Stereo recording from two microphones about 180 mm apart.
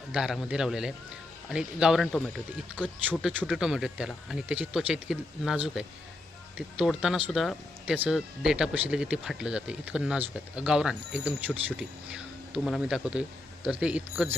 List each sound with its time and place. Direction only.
0.1 s speech: 5° right (ahead or behind)